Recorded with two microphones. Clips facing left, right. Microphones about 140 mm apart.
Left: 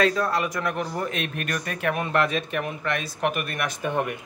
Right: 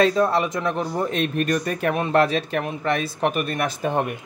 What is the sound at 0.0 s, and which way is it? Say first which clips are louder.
Speech: right 4 dB; 25° right (ahead or behind).